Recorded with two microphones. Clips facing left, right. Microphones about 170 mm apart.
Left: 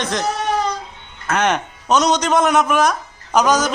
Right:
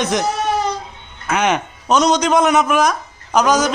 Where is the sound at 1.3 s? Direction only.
Centre (ahead or behind).